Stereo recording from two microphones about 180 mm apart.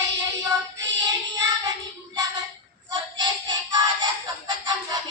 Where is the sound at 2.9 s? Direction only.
25° right (ahead or behind).